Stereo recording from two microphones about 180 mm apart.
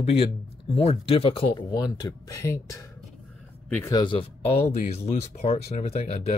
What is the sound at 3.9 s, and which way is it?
Speech, 25° left (ahead or behind).